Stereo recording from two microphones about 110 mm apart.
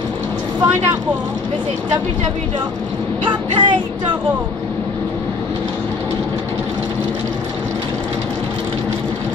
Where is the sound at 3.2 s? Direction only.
45° right (ahead or behind).